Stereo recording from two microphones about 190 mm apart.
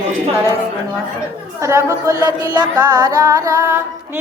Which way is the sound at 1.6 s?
15° right (ahead or behind).